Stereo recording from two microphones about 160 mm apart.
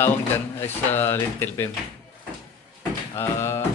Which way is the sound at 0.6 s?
15° left (ahead or behind).